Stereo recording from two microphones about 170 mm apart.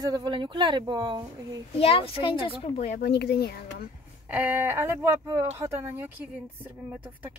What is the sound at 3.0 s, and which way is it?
Speech, 70° left (ahead or behind).